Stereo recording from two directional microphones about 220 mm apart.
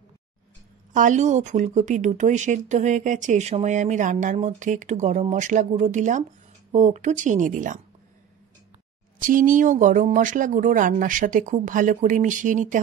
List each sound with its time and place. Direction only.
0.9 s a woman's voice: 35° right (ahead or behind)
9.2 s a woman's voice: 40° right (ahead or behind)